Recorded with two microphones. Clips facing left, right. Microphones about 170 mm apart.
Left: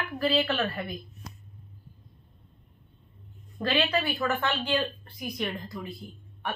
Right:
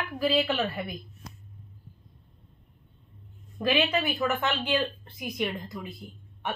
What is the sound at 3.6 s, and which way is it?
A woman's voice, 15° right (ahead or behind).